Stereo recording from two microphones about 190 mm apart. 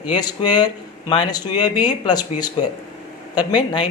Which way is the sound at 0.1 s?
20° left (ahead or behind).